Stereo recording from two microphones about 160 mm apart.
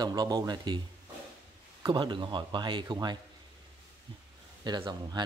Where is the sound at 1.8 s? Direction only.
30° right (ahead or behind).